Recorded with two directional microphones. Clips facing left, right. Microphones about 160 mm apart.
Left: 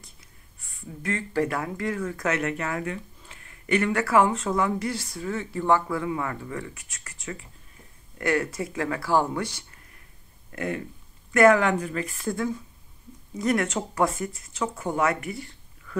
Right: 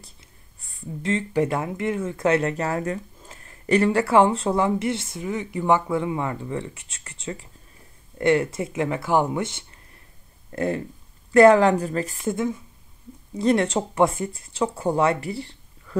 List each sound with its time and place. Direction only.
0.0 s a sound: 35° right (ahead or behind)
1.1 s speech: 20° right (ahead or behind)
10.5 s speech: 35° right (ahead or behind)
12.2 s speech: 20° right (ahead or behind)